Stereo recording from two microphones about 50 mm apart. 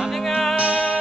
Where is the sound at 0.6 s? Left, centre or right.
Centre.